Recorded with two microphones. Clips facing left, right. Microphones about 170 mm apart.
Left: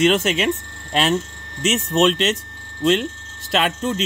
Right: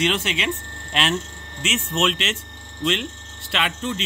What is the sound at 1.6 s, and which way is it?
Speech, 40° left (ahead or behind).